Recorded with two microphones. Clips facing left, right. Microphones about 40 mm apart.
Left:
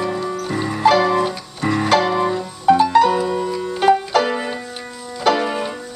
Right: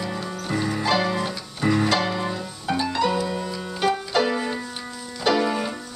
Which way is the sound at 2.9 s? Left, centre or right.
Left.